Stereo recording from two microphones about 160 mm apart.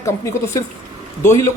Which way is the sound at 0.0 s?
20° left (ahead or behind).